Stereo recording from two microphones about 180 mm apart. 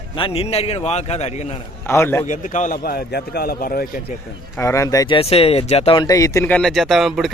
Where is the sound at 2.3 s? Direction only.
45° left (ahead or behind).